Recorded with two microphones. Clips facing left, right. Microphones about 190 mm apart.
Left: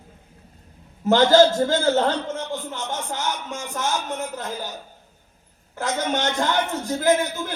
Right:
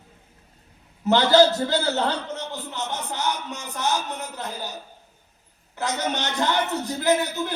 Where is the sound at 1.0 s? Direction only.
45° left (ahead or behind).